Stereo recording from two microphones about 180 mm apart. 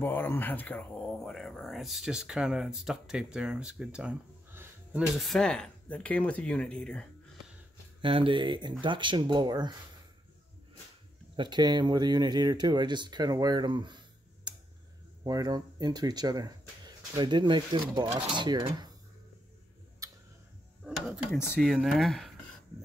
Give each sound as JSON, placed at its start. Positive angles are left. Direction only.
{"t": 0.0, "sound": "speech", "side_deg": 10}
{"t": 8.0, "sound": "speech", "side_deg": -30}
{"t": 11.3, "sound": "speech", "side_deg": -25}
{"t": 20.0, "sound": "tick-tock", "side_deg": -20}
{"t": 20.8, "sound": "mechanisms", "side_deg": 0}
{"t": 21.5, "sound": "speech", "side_deg": 0}